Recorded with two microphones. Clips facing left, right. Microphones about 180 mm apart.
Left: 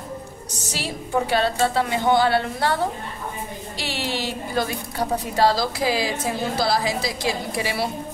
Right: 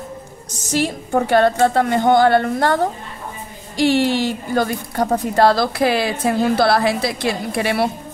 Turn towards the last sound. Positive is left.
turn(degrees=-60)  # may be behind; listen again after turning